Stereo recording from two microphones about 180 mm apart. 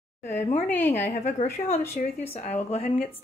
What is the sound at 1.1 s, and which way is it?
A woman's voice, 40° left (ahead or behind).